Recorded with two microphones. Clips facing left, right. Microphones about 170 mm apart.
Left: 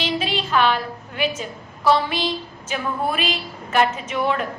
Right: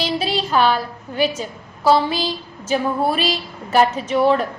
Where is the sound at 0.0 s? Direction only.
35° right (ahead or behind).